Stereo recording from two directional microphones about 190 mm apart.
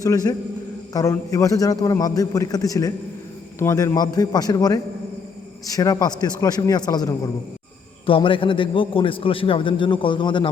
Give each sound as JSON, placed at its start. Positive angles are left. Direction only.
{"t": 0.0, "sound": "a man's voice", "side_deg": 20}